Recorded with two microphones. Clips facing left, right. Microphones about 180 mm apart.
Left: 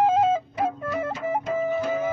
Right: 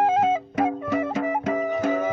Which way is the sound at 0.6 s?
75° right (ahead or behind).